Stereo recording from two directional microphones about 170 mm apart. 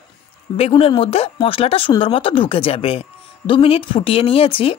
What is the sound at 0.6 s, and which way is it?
Speech, 35° left (ahead or behind).